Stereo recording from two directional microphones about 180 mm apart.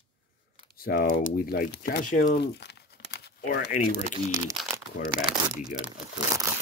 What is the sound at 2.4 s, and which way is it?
Crumpling, 70° left (ahead or behind).